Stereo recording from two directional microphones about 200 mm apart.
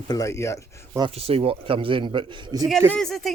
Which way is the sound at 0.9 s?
25° right (ahead or behind).